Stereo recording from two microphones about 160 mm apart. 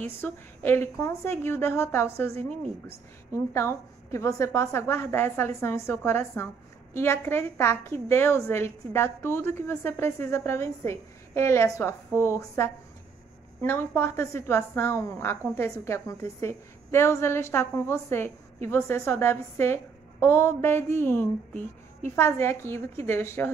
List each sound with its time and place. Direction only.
0.0 s a woman's voice: 15° left (ahead or behind)
3.3 s a woman's voice: 15° left (ahead or behind)